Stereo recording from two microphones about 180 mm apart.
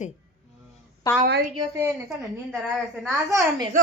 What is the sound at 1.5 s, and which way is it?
Speech, 20° right (ahead or behind).